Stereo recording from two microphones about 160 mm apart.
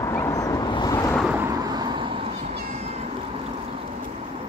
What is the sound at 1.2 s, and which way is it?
Thunder, 5° right (ahead or behind).